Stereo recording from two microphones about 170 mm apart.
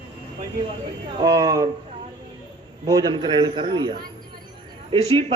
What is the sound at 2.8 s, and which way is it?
A man's voice, 25° right (ahead or behind).